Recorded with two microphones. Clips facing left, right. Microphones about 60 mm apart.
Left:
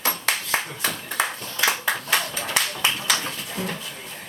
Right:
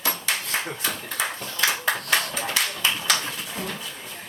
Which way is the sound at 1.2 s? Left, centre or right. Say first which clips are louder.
Left 4 dB; left.